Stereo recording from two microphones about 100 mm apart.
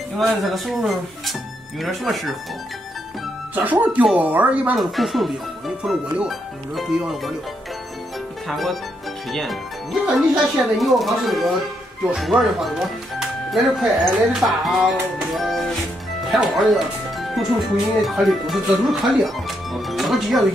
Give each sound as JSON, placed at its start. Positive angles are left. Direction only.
{"t": 0.2, "sound": "speech", "side_deg": 0}
{"t": 3.7, "sound": "speech", "side_deg": -15}
{"t": 4.7, "sound": "speech", "side_deg": 0}
{"t": 8.5, "sound": "speech", "side_deg": 0}